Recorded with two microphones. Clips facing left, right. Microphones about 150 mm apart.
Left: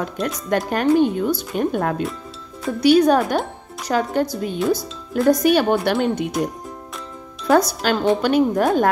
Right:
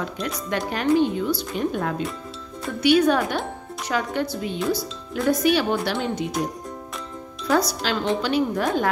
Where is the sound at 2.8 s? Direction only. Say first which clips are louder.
Left 4 dB; 40° left (ahead or behind); by 6.3 s 55° left (ahead or behind).